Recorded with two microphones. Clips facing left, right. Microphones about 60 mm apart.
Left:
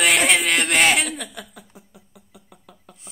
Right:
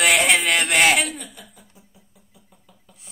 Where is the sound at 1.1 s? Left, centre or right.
Left.